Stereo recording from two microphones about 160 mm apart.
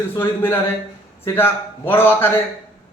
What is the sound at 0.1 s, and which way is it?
A man's voice, 15° left (ahead or behind).